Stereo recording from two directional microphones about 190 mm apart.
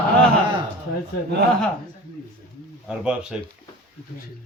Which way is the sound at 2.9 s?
5° right (ahead or behind).